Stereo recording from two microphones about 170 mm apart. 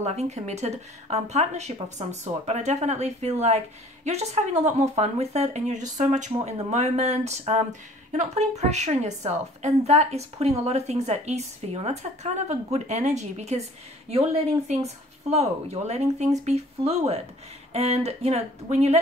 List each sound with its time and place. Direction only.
0.0 s a woman's voice: 40° right (ahead or behind)